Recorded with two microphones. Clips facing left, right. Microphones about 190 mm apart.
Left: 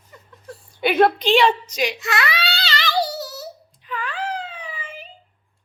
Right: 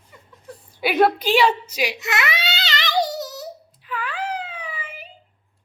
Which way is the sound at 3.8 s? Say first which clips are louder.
Even; 5° right (ahead or behind).